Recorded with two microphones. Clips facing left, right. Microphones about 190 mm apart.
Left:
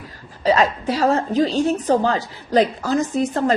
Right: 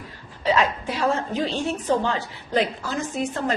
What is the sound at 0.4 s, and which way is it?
A woman's voice, 40° left (ahead or behind).